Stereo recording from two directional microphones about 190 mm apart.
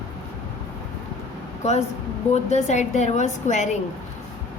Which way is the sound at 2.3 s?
35° left (ahead or behind).